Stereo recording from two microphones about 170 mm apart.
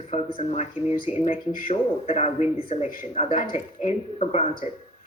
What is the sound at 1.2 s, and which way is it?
Speech, 55° left (ahead or behind).